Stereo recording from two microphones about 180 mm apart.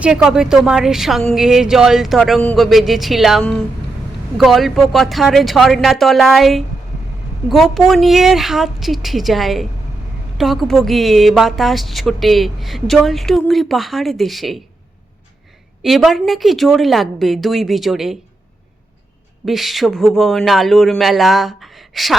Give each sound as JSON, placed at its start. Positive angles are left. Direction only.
{"t": 0.0, "sound": "a woman's voice", "side_deg": -5}
{"t": 15.8, "sound": "a woman's voice", "side_deg": 0}
{"t": 19.5, "sound": "a woman's voice", "side_deg": 0}